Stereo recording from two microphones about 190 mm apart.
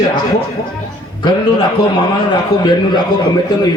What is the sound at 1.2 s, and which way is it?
A man's voice, 25° left (ahead or behind).